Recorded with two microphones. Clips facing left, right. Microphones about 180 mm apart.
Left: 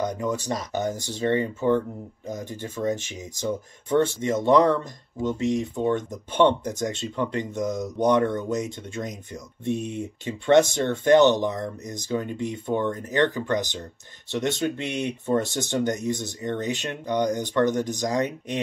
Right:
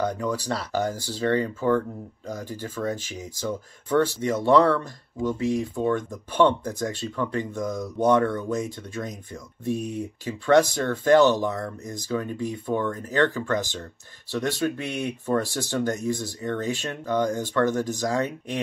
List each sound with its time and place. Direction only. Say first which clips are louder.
0.0 s speech: even; 20° left (ahead or behind)